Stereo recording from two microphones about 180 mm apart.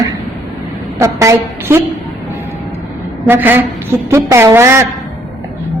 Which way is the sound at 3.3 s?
10° right (ahead or behind).